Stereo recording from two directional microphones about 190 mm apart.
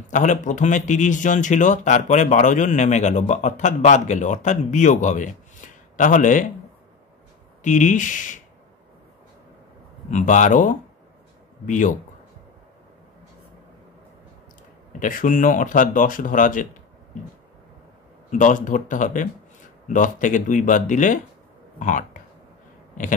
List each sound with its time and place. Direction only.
0.1 s a man's voice: 40° left (ahead or behind)
7.6 s a man's voice: 40° left (ahead or behind)
10.1 s a man's voice: 40° left (ahead or behind)
14.9 s speech: 45° left (ahead or behind)
18.3 s speech: 40° left (ahead or behind)